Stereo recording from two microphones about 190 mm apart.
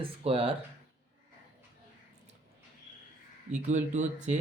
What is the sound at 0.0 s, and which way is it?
Speech, 30° right (ahead or behind).